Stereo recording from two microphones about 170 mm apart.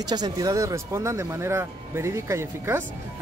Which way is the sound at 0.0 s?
25° right (ahead or behind).